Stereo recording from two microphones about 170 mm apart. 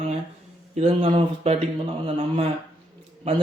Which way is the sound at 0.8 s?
35° right (ahead or behind).